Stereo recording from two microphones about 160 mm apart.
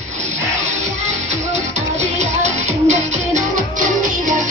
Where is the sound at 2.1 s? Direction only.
50° right (ahead or behind).